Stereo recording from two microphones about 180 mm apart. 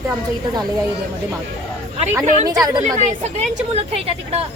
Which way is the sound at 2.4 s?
20° right (ahead or behind).